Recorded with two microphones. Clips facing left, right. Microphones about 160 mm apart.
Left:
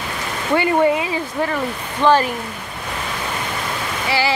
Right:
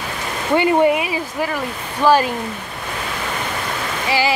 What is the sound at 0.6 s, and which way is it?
Speech, 20° right (ahead or behind).